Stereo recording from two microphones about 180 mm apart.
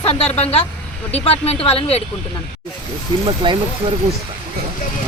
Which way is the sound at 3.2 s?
25° right (ahead or behind).